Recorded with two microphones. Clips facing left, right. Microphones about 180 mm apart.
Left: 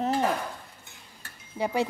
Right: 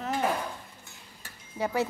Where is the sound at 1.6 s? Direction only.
15° left (ahead or behind).